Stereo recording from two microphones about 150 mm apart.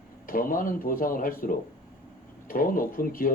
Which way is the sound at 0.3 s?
70° left (ahead or behind).